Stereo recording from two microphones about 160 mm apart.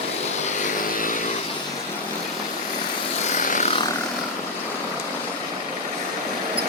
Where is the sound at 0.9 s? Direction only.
55° left (ahead or behind).